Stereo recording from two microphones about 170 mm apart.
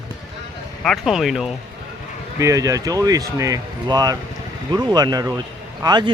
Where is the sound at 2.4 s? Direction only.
20° right (ahead or behind).